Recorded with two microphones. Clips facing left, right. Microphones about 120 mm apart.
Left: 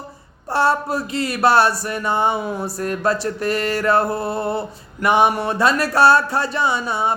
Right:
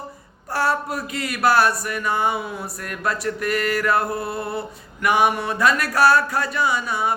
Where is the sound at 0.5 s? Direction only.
25° left (ahead or behind).